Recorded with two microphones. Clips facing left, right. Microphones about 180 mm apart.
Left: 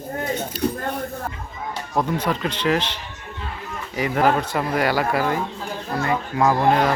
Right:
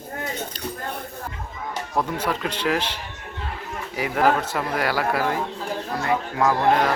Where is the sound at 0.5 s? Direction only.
10° left (ahead or behind).